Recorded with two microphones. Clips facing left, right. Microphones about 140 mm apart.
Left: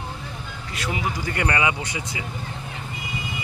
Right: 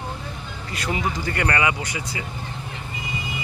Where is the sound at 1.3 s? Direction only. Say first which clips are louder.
Even; 20° left (ahead or behind).